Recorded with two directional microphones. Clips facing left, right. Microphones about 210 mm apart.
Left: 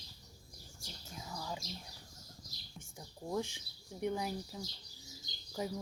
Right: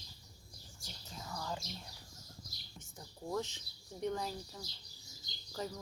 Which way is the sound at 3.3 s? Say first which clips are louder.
Left 1 dB; 10° left (ahead or behind).